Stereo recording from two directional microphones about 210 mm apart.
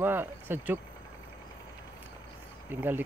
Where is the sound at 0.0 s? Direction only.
10° right (ahead or behind).